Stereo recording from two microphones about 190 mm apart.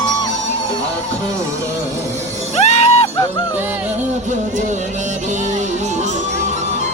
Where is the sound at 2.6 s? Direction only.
35° left (ahead or behind).